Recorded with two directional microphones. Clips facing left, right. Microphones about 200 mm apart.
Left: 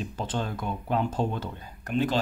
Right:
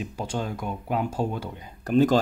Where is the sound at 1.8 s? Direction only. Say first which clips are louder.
Right 7 dB; 40° right (ahead or behind).